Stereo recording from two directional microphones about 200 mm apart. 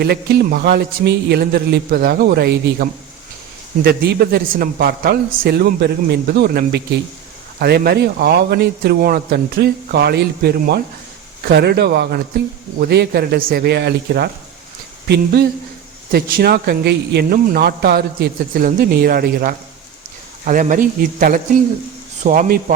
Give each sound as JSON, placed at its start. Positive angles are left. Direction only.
{"t": 0.0, "sound": "speech", "side_deg": -55}
{"t": 3.8, "sound": "speech", "side_deg": -50}